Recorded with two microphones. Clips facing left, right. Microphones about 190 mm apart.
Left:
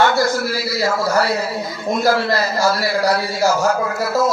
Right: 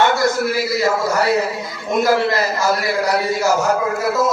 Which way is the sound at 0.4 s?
35° left (ahead or behind).